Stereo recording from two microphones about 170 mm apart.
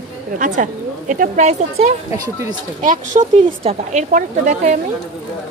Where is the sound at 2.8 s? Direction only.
50° right (ahead or behind).